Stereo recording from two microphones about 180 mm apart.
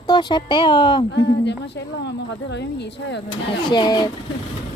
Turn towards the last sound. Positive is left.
turn(degrees=25)  # may be behind; listen again after turning